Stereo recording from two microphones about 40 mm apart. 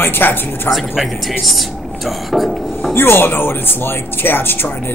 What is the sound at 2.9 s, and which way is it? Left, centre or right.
Speech, left.